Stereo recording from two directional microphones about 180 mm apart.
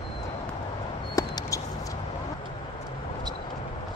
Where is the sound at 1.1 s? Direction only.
20° left (ahead or behind).